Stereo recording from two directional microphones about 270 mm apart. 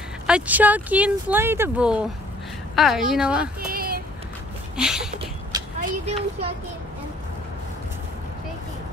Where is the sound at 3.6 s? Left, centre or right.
Right.